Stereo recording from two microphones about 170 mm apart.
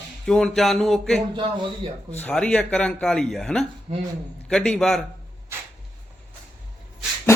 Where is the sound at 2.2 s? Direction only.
5° left (ahead or behind).